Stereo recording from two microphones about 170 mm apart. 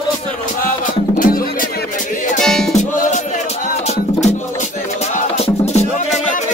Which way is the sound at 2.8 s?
50° left (ahead or behind).